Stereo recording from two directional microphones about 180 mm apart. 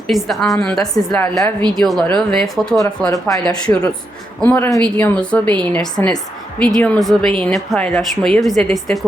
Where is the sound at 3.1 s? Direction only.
20° left (ahead or behind).